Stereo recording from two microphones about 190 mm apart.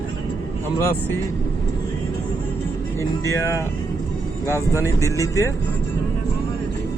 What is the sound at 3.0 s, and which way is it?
Speech, 15° left (ahead or behind).